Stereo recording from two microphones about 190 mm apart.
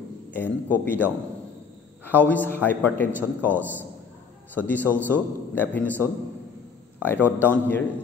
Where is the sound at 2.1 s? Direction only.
10° left (ahead or behind).